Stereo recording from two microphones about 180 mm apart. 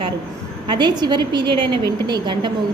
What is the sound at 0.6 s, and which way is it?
A woman's voice, 25° right (ahead or behind).